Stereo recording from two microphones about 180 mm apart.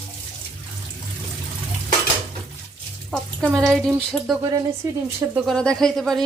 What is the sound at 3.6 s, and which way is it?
Speech, centre (ahead or behind).